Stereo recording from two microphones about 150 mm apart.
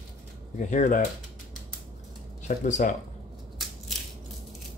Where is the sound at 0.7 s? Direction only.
55° left (ahead or behind).